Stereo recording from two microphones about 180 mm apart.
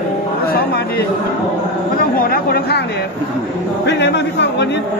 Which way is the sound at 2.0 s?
55° left (ahead or behind).